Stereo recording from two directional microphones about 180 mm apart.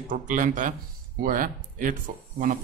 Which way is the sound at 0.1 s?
45° right (ahead or behind).